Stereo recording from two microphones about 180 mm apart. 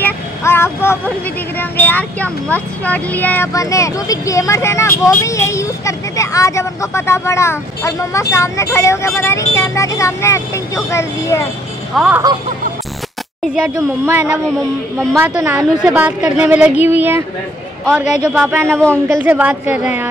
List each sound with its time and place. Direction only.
0.0 s vehicle: 15° left (ahead or behind)
1.6 s speech: 10° left (ahead or behind)
11.9 s speech: 5° right (ahead or behind)
13.7 s a woman's voice: 15° right (ahead or behind)
14.2 s a woman's voice: 5° right (ahead or behind)
18.3 s a woman's voice: 10° right (ahead or behind)
18.7 s speech: 5° left (ahead or behind)
19.0 s a woman's voice: 10° right (ahead or behind)